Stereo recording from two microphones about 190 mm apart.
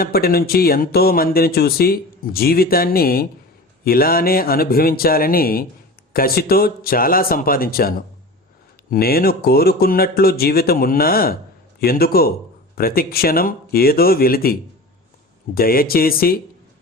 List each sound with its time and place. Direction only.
0.0 s speech: 55° left (ahead or behind)